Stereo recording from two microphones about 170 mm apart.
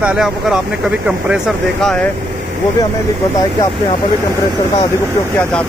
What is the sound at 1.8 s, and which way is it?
Speech, 5° left (ahead or behind).